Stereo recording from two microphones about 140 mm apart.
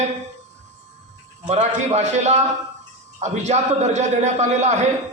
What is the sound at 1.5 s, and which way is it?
A man's voice, 55° right (ahead or behind).